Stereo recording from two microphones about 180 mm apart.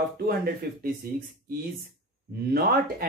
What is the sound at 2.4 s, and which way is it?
Speech, 60° right (ahead or behind).